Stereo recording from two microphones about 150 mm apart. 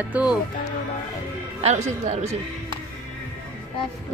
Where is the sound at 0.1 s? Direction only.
10° right (ahead or behind).